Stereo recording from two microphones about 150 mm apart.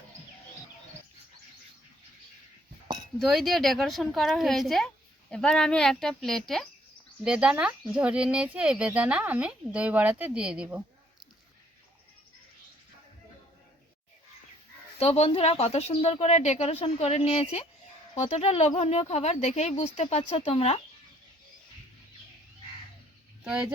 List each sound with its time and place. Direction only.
3.2 s speech: centre (ahead or behind)
14.9 s speech: 45° left (ahead or behind)
23.4 s speech: 10° right (ahead or behind)